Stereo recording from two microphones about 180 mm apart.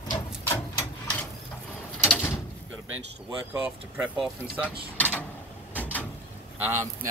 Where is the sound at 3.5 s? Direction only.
5° right (ahead or behind).